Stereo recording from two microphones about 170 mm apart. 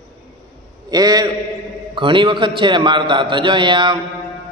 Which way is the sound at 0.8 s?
25° right (ahead or behind).